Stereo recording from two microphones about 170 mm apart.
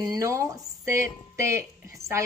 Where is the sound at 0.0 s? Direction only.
20° right (ahead or behind).